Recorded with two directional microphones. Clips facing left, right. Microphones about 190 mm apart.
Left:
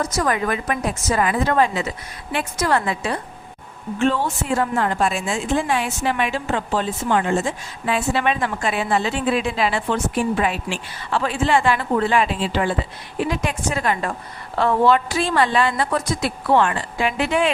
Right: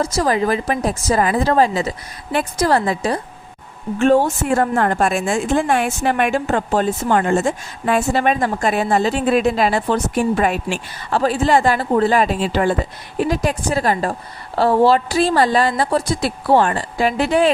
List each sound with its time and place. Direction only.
0.0 s a woman's voice: 30° right (ahead or behind)